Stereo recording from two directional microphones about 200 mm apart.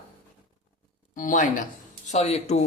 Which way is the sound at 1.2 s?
40° left (ahead or behind).